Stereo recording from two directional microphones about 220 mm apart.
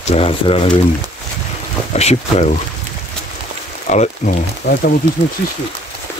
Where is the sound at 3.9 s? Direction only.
35° left (ahead or behind).